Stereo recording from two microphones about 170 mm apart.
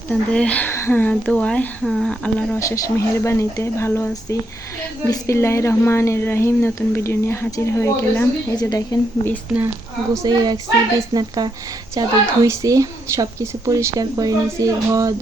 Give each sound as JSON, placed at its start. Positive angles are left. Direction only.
{"t": 0.1, "sound": "speech", "side_deg": 5}
{"t": 2.6, "sound": "a woman's voice", "side_deg": 20}
{"t": 10.2, "sound": "speech", "side_deg": -25}